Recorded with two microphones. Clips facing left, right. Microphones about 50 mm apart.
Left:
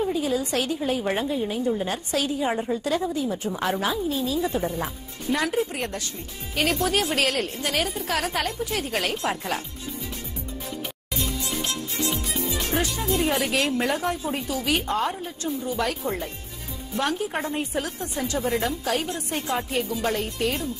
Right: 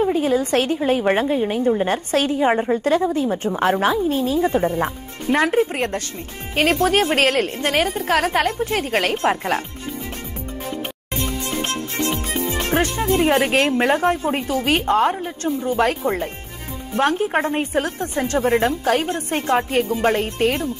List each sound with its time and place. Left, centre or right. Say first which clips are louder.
0.0 s a woman's voice: right 6 dB; right
10.7 s music: right 6 dB; right
16.9 s a woman's voice: right 7 dB; right